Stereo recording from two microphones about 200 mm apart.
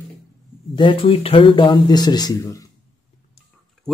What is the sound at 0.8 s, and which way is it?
Speech, 25° left (ahead or behind).